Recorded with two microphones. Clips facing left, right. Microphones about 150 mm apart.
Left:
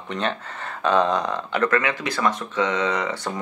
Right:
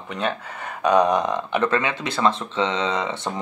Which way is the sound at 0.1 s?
10° right (ahead or behind).